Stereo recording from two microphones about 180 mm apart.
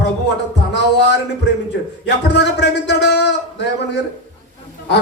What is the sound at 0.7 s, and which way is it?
Music, 70° left (ahead or behind).